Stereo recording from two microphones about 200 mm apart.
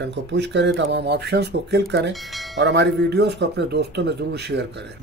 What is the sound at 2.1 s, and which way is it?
Speech, centre (ahead or behind).